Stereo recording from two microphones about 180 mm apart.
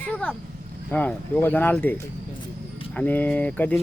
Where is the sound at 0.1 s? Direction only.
10° left (ahead or behind).